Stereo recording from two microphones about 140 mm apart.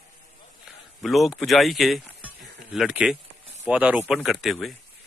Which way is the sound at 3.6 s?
10° right (ahead or behind).